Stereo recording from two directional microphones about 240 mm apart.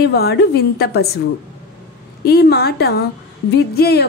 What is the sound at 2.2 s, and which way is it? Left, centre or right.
A woman's voice, left.